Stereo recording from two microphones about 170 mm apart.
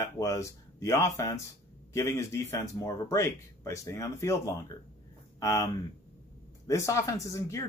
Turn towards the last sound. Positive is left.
turn(degrees=20)  # may be behind; listen again after turning